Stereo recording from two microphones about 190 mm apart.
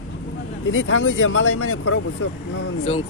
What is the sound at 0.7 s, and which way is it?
Speech, 90° left.